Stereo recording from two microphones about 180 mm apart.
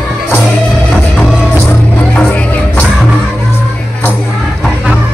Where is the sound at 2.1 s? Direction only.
10° left (ahead or behind).